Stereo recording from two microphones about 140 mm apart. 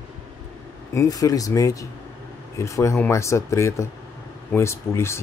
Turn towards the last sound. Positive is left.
turn(degrees=20)  # may be behind; listen again after turning